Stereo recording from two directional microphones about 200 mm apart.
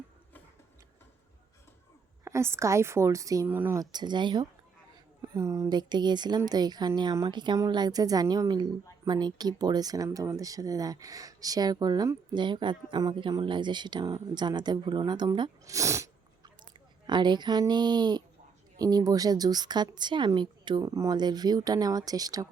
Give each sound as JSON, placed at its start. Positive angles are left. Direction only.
{"t": 2.2, "sound": "a woman's voice", "side_deg": -15}